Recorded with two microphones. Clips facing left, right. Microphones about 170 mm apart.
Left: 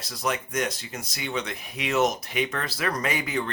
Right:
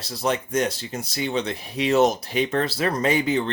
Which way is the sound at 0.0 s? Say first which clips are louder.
Right 4 dB; 30° right (ahead or behind).